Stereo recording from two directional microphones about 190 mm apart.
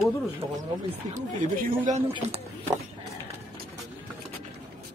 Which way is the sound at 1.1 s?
45° right (ahead or behind).